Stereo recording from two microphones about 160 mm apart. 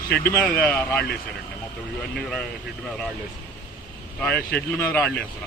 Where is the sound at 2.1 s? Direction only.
Centre (ahead or behind).